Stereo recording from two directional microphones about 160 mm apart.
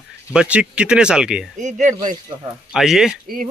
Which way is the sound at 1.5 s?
50° right (ahead or behind).